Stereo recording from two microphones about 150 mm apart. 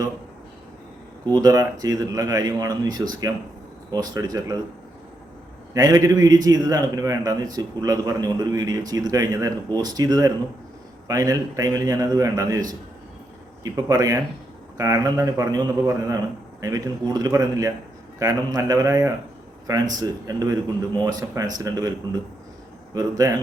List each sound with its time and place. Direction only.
1.2 s a man's voice: 25° right (ahead or behind)
5.7 s a man's voice: 20° right (ahead or behind)
13.7 s a man's voice: 25° right (ahead or behind)